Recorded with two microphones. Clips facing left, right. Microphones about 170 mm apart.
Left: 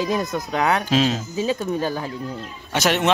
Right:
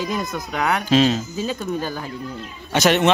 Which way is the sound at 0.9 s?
5° left (ahead or behind).